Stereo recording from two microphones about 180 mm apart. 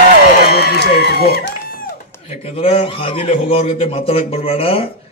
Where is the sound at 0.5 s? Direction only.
60° left (ahead or behind).